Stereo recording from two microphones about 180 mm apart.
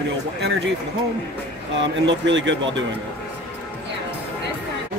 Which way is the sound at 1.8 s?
90° right.